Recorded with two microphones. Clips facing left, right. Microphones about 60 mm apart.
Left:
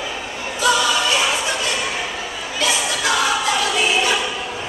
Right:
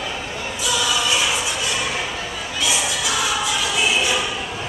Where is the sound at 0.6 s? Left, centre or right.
Left.